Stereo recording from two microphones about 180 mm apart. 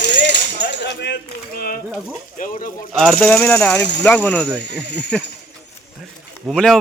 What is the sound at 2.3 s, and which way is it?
Speech, 50° left (ahead or behind).